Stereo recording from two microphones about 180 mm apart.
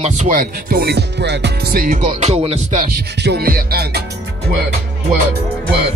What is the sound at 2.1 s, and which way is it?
Music, 35° right (ahead or behind).